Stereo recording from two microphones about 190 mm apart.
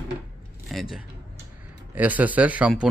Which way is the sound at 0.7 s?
Centre (ahead or behind).